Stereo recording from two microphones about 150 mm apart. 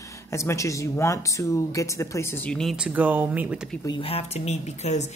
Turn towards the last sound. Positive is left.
turn(degrees=50)  # may be behind; listen again after turning